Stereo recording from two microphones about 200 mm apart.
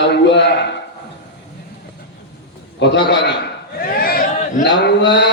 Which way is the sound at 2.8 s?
60° left (ahead or behind).